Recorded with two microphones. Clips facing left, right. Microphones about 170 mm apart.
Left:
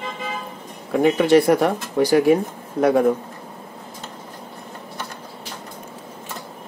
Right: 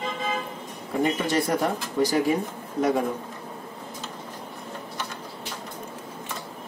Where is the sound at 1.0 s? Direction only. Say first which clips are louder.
Left 10 dB; 70° left (ahead or behind).